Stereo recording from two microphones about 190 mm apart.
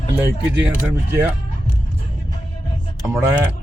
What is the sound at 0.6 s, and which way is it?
Speech, 10° right (ahead or behind).